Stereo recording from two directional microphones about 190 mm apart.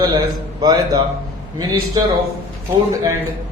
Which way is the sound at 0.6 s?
20° right (ahead or behind).